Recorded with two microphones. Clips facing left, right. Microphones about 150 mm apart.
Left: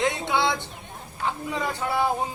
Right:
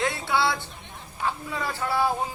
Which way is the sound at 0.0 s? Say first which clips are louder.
Left 1 dB; 20° left (ahead or behind).